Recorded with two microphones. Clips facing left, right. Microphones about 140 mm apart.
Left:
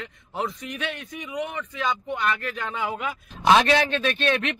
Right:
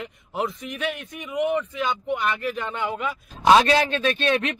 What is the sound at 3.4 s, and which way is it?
A man's voice, 30° right (ahead or behind).